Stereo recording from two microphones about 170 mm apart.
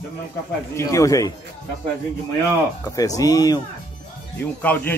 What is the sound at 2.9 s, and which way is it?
Speech, 20° left (ahead or behind).